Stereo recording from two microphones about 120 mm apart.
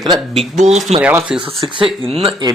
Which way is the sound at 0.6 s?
70° right (ahead or behind).